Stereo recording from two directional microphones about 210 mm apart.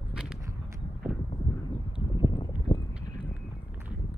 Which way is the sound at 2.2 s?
20° left (ahead or behind).